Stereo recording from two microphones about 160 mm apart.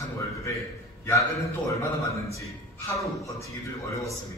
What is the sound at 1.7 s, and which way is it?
Speech, 20° left (ahead or behind).